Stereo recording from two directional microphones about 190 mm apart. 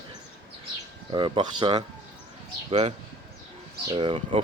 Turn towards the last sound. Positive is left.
turn(degrees=-30)  # may be behind; listen again after turning